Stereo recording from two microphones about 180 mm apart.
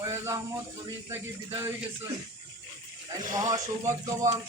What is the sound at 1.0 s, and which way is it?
Speech, 15° right (ahead or behind).